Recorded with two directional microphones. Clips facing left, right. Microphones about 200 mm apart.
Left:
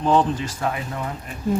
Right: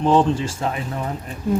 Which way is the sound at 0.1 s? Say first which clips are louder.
Right 1 dB; 25° right (ahead or behind).